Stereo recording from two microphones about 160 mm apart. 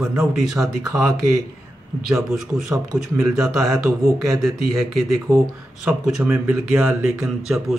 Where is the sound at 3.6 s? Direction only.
20° right (ahead or behind).